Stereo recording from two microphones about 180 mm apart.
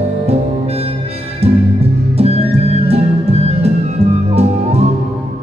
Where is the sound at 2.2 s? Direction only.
35° right (ahead or behind).